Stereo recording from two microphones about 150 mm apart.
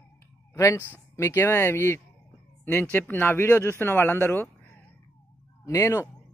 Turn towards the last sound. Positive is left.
turn(degrees=20)  # may be behind; listen again after turning